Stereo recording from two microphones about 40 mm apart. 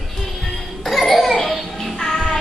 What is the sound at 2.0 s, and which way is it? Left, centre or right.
Music, centre.